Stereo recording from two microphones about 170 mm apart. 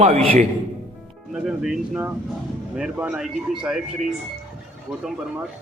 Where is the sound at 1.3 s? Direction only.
5° right (ahead or behind).